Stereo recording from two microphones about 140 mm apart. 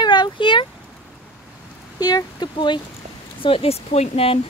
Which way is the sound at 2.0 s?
30° left (ahead or behind).